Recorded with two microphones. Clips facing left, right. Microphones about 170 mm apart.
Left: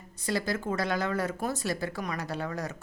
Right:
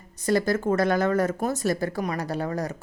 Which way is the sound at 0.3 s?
45° right (ahead or behind).